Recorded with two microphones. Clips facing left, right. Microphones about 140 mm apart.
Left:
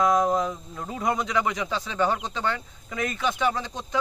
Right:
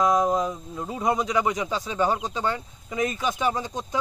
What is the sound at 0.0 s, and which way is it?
Speech, 10° right (ahead or behind).